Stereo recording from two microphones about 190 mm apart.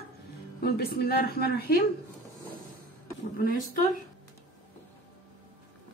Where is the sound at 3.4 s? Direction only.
45° left (ahead or behind).